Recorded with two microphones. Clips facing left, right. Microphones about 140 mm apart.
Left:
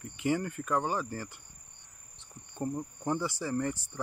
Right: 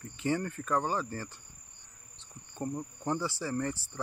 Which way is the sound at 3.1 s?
15° left (ahead or behind).